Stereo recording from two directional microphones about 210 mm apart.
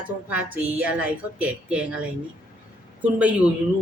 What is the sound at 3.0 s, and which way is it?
Speech, 5° right (ahead or behind).